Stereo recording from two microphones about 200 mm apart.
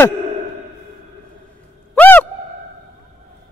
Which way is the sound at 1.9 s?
10° left (ahead or behind).